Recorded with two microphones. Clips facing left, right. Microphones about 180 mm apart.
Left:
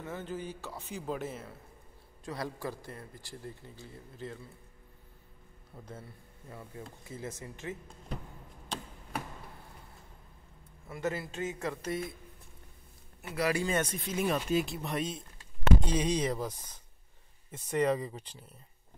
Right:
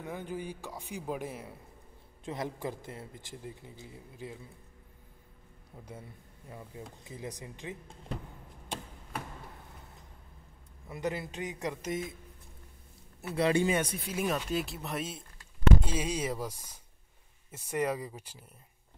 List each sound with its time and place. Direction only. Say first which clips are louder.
0.0 s speech: right 1 dB; 15° right (ahead or behind)
6.5 s speech: even; 15° right (ahead or behind)
10.9 s speech: even; 20° right (ahead or behind)
13.3 s speech: right 4 dB; 25° right (ahead or behind)
13.7 s speech: right 1 dB; 10° right (ahead or behind)